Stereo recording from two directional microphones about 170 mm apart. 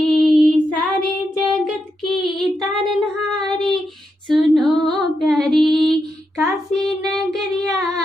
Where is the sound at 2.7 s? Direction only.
Centre (ahead or behind).